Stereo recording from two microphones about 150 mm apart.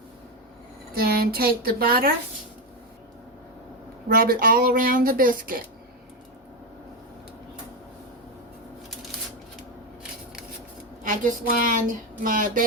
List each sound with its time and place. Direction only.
0.9 s speech: 90° right
4.1 s speech: 80° right
11.0 s a woman's voice: 60° right (ahead or behind)